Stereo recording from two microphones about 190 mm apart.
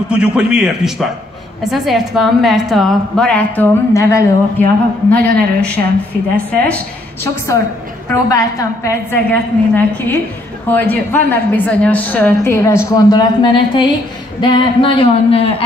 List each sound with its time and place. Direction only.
0.1 s a woman's voice: 5° right (ahead or behind)
8.1 s a woman's voice: 15° left (ahead or behind)
14.4 s a sound: 25° left (ahead or behind)